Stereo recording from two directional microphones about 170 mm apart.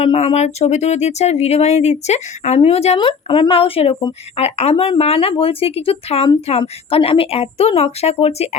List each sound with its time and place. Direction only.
0.0 s speech: 35° left (ahead or behind)